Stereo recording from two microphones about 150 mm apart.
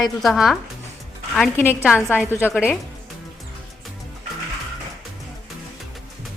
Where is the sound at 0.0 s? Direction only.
Centre (ahead or behind).